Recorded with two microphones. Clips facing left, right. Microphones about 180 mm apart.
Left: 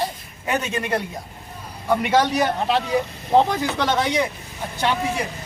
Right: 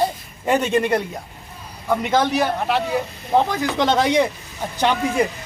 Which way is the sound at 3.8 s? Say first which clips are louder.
Right 5 dB; 30° right (ahead or behind).